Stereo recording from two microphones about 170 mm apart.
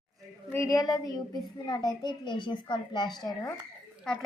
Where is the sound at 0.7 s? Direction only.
20° left (ahead or behind).